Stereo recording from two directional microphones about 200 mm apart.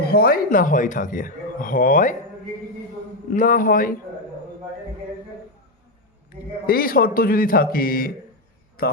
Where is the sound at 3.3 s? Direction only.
45° left (ahead or behind).